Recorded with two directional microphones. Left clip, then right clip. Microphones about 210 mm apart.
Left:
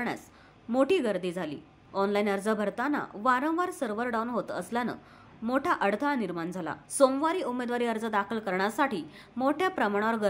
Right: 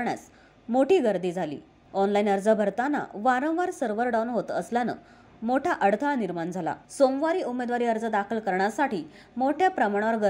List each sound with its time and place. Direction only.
0.7 s a woman's voice: 5° right (ahead or behind)